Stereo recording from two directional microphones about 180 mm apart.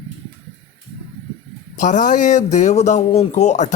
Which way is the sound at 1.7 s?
45° left (ahead or behind).